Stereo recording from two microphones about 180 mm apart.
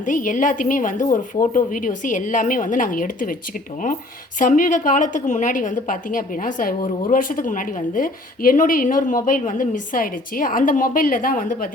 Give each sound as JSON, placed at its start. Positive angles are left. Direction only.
{"t": 0.0, "sound": "a woman's voice", "side_deg": 45}
{"t": 4.4, "sound": "a woman's voice", "side_deg": 50}